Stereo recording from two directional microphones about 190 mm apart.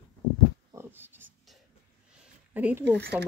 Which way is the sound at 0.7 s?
10° right (ahead or behind).